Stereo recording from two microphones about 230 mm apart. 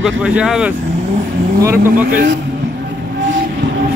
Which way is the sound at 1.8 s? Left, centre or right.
Right.